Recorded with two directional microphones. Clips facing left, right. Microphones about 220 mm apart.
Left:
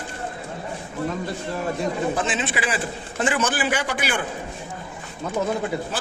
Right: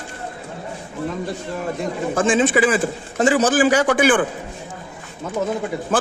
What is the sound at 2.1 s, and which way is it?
A man's voice, 45° right (ahead or behind).